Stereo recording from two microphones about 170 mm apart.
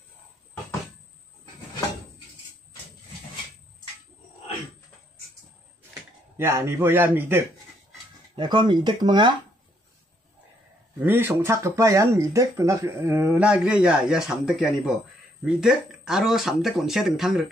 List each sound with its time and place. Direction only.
6.3 s speech: 15° right (ahead or behind)
8.4 s speech: 25° right (ahead or behind)
11.0 s speech: 10° right (ahead or behind)